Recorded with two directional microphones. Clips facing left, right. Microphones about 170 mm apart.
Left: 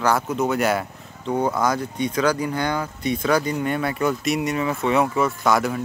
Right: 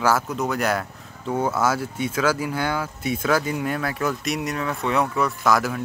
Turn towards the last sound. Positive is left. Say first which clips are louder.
# left 1 dB
turn(degrees=0)  # may be behind; listen again after turning